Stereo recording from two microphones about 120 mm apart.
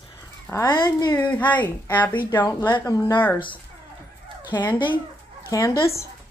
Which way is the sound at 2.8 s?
30° left (ahead or behind).